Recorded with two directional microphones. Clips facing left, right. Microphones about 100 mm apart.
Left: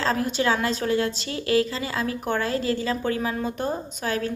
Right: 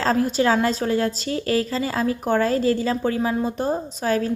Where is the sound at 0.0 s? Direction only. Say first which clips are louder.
Right 4 dB; 35° right (ahead or behind).